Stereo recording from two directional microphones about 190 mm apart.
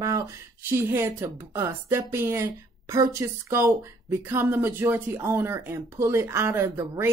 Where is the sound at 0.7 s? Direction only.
10° right (ahead or behind).